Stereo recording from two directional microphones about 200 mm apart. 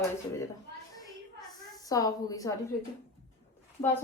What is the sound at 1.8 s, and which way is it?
Speech, 20° left (ahead or behind).